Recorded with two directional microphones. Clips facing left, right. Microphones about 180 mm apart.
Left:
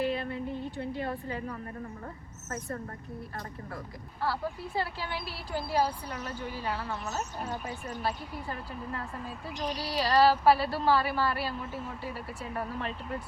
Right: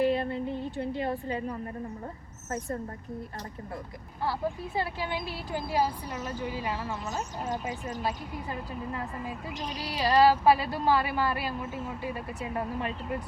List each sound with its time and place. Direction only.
0.3 s a woman's voice: 25° right (ahead or behind)
4.2 s speech: 20° right (ahead or behind)